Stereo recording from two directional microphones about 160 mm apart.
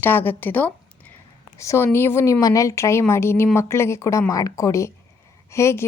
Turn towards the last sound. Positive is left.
turn(degrees=15)  # may be behind; listen again after turning